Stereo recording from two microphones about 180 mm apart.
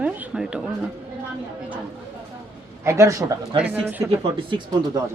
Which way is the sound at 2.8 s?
15° right (ahead or behind).